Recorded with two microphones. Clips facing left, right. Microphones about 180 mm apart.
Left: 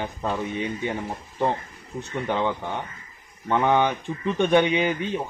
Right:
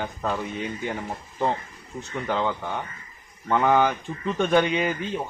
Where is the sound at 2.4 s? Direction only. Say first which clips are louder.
Left 1 dB; 15° left (ahead or behind).